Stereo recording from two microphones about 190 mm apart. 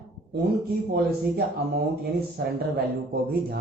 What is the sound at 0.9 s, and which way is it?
A man's voice, 55° right (ahead or behind).